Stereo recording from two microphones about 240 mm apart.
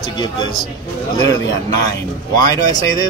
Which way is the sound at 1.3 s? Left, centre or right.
Centre.